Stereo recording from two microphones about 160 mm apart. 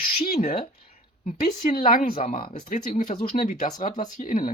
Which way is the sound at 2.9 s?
50° left (ahead or behind).